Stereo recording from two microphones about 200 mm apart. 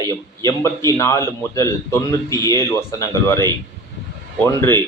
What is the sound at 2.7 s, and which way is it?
Speech, 15° left (ahead or behind).